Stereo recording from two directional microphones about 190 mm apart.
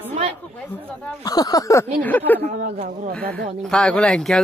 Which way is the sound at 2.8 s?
40° right (ahead or behind).